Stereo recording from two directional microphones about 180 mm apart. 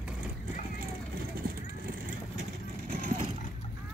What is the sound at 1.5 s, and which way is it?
Vehicle, 60° right (ahead or behind).